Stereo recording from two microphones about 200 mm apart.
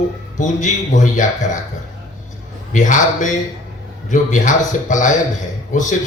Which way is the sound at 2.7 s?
40° left (ahead or behind).